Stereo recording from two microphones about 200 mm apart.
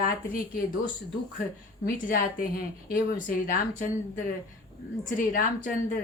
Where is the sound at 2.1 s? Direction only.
45° left (ahead or behind).